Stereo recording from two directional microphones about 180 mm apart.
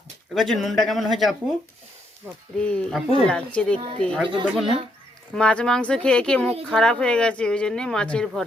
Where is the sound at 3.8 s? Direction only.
30° right (ahead or behind).